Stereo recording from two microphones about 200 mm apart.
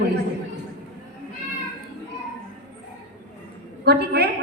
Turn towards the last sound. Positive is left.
turn(degrees=-55)  # may be behind; listen again after turning